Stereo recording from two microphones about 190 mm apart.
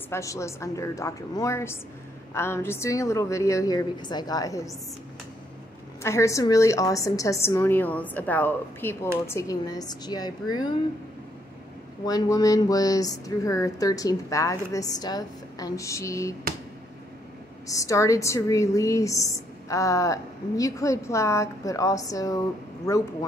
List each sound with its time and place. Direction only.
0.1 s a woman's voice: 15° left (ahead or behind)
6.0 s a woman's voice: 15° left (ahead or behind)
12.1 s speech: 20° left (ahead or behind)
17.6 s a woman's voice: 15° left (ahead or behind)